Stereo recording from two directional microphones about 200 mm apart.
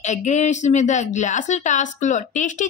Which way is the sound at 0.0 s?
35° left (ahead or behind).